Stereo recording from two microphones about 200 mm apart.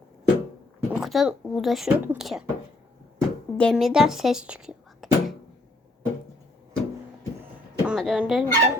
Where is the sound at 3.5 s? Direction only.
5° left (ahead or behind).